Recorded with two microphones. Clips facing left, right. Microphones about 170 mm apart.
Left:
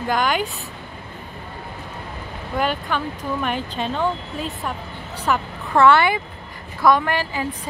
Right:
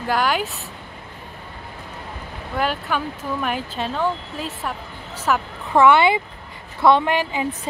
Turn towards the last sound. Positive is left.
turn(degrees=-20)  # may be behind; listen again after turning